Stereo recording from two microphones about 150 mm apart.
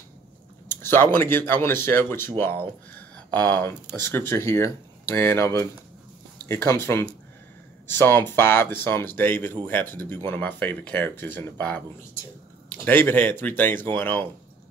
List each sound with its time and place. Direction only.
0.7 s speech: 15° left (ahead or behind)
12.8 s speech: 15° left (ahead or behind)